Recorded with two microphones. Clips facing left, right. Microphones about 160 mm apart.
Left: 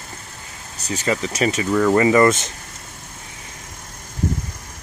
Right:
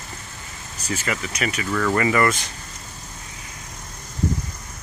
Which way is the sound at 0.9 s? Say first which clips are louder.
Left 5 dB; 30° left (ahead or behind).